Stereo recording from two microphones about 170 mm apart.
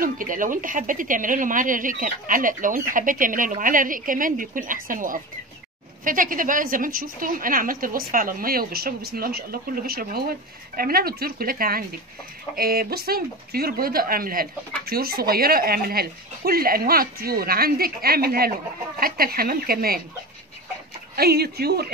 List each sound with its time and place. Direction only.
0.0 s a woman's voice: 55° right (ahead or behind)
21.2 s speech: 70° right (ahead or behind)